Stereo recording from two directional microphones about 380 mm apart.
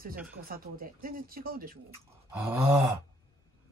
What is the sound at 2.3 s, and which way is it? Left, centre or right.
Groan, centre.